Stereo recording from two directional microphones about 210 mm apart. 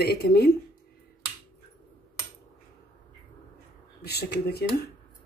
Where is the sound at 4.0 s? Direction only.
50° left (ahead or behind).